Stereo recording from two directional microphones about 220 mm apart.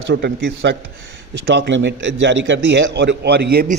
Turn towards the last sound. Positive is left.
turn(degrees=-45)  # may be behind; listen again after turning